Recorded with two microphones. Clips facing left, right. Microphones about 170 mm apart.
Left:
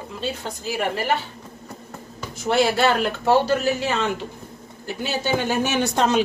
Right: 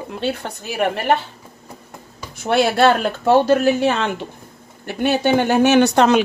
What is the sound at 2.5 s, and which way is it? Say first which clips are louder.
A woman's voice: right 4 dB; 60° right (ahead or behind).